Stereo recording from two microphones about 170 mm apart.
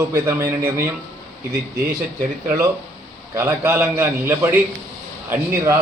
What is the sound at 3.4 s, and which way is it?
A man's voice, 15° right (ahead or behind).